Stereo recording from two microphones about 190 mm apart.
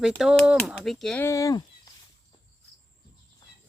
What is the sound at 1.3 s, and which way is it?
Speech, 15° left (ahead or behind).